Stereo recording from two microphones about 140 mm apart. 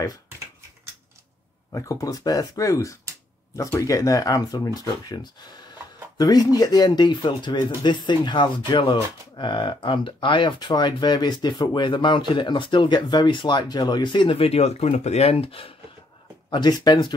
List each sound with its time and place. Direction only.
1.7 s speech: 20° left (ahead or behind); by 15.7 s 45° left (ahead or behind)
16.4 s speech: 30° left (ahead or behind)